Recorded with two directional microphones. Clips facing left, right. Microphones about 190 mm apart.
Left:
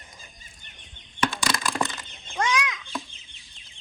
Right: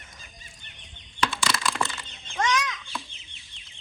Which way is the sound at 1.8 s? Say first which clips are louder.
Left 2 dB; 15° left (ahead or behind).